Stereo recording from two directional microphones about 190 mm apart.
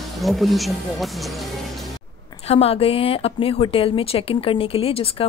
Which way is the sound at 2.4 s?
30° left (ahead or behind).